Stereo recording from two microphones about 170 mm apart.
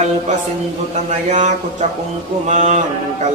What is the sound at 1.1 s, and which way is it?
Speech, 45° right (ahead or behind).